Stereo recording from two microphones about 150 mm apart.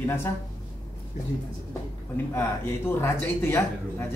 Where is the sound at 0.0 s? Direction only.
15° left (ahead or behind).